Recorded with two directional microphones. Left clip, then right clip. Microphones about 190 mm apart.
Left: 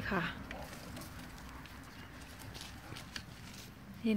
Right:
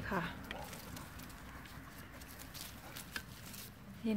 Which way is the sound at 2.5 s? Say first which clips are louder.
Left 1 dB; 50° right (ahead or behind).